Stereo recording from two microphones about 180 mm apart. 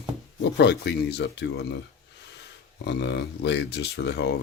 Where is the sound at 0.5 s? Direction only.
65° left (ahead or behind).